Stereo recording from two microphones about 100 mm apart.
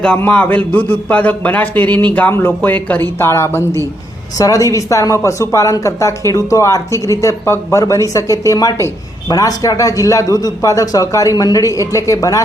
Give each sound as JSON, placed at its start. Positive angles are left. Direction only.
{"t": 0.3, "sound": "a man's voice", "side_deg": 15}